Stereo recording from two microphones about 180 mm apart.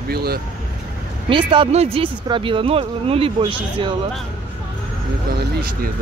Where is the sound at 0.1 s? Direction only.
60° right (ahead or behind).